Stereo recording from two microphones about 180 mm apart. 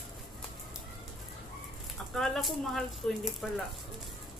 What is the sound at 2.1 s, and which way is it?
Speech, centre (ahead or behind).